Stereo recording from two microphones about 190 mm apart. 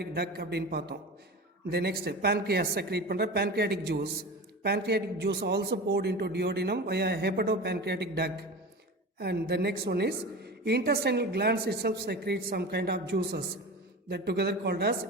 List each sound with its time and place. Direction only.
0.0 s a woman's voice: 55° right (ahead or behind)